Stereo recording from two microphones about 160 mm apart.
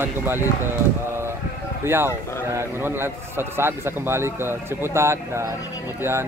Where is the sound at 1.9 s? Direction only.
15° right (ahead or behind).